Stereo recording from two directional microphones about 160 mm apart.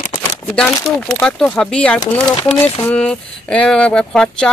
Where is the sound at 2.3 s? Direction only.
30° left (ahead or behind).